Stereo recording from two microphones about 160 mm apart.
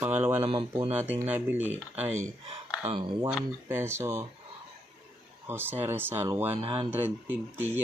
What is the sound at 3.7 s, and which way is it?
Speech, 15° right (ahead or behind).